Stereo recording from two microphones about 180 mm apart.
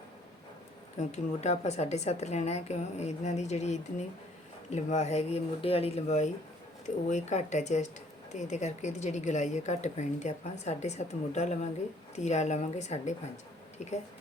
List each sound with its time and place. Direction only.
0.9 s a woman's voice: 40° left (ahead or behind)